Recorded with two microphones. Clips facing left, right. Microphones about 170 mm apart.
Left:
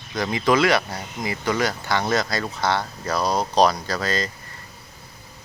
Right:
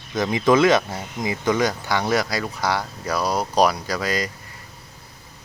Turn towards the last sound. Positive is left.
turn(degrees=-10)  # may be behind; listen again after turning